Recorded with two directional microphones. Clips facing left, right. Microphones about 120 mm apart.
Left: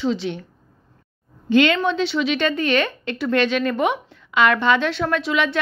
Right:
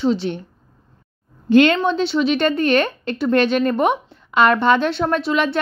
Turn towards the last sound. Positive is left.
turn(degrees=-35)  # may be behind; listen again after turning